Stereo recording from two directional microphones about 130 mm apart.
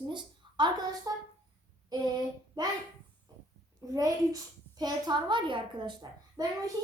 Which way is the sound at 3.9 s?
25° right (ahead or behind).